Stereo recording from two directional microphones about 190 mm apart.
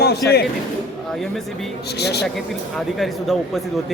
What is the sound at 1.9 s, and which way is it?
Speech, 60° left (ahead or behind).